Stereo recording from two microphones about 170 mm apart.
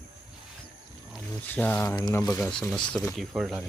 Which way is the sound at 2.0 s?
25° left (ahead or behind).